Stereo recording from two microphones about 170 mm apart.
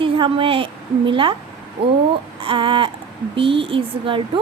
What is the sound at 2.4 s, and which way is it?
A woman's voice, 30° right (ahead or behind).